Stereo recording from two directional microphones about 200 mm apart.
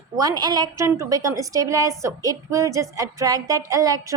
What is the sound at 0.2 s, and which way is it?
A woman's voice, 20° right (ahead or behind).